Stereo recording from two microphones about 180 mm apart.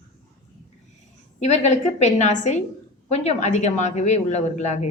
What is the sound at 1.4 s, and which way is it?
A man's voice, 40° left (ahead or behind).